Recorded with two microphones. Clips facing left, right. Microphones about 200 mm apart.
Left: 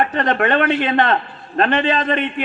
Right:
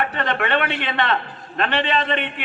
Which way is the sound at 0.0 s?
45° left (ahead or behind).